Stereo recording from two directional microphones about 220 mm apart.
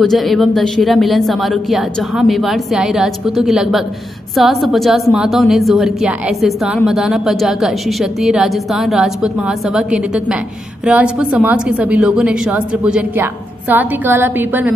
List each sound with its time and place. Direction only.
0.0 s a woman's voice: centre (ahead or behind)